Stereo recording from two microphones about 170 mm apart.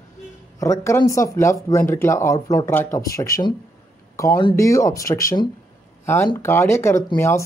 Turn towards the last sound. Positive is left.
turn(degrees=15)  # may be behind; listen again after turning